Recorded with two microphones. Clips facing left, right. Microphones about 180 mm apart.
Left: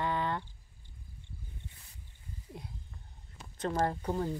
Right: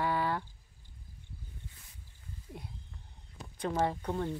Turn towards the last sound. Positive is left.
turn(degrees=5)  # may be behind; listen again after turning